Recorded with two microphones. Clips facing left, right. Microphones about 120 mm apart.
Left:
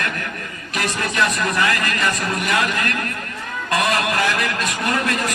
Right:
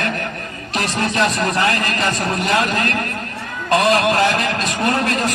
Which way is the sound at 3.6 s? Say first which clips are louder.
Right 5 dB; 30° right (ahead or behind).